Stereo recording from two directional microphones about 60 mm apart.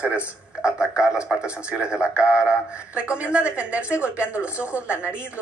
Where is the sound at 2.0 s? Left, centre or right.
Left.